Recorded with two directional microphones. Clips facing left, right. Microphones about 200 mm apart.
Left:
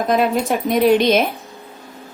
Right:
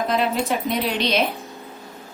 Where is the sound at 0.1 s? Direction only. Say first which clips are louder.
Left 7 dB; 50° left (ahead or behind).